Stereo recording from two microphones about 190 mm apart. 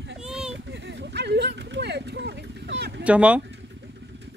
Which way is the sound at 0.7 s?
65° right (ahead or behind).